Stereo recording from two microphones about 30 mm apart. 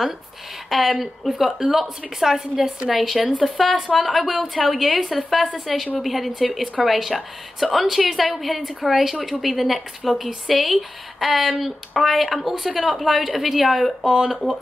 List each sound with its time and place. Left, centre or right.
0.7 s a woman's voice: centre
14.0 s speech: right